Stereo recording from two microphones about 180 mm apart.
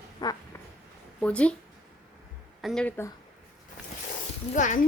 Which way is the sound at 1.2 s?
5° left (ahead or behind).